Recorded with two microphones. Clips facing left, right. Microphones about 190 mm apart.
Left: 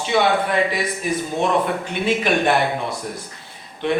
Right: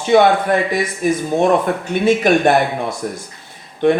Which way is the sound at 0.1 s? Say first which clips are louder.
Right 6 dB; 50° right (ahead or behind).